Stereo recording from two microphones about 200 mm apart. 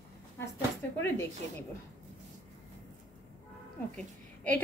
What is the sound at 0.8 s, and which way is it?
Speech, 10° left (ahead or behind).